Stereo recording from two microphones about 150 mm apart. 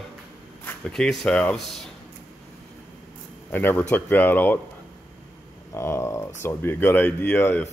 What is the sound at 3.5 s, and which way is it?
Speech, 10° left (ahead or behind).